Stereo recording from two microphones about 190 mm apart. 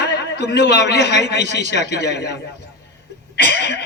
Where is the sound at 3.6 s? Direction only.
60° left (ahead or behind).